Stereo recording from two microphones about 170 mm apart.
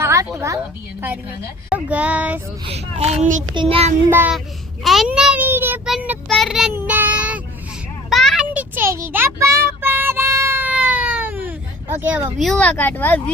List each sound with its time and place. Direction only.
0.0 s a sound: 15° right (ahead or behind)
0.3 s a woman's voice: 15° right (ahead or behind)
1.7 s speech: 10° right (ahead or behind)
2.6 s a child's voice: 40° right (ahead or behind)
3.5 s a child's voice: 30° right (ahead or behind)
4.1 s speech: 10° right (ahead or behind)
4.8 s a sound: centre (ahead or behind)
6.2 s child singing: centre (ahead or behind)